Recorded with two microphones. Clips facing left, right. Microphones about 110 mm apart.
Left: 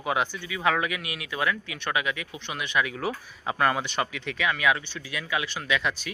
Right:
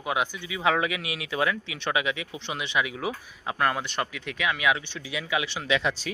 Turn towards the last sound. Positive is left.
turn(degrees=-25)  # may be behind; listen again after turning